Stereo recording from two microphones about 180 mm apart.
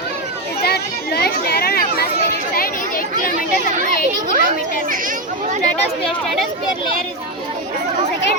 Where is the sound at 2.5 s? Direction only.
55° left (ahead or behind).